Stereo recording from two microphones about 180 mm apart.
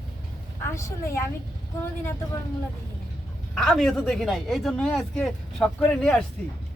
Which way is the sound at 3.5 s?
Centre (ahead or behind).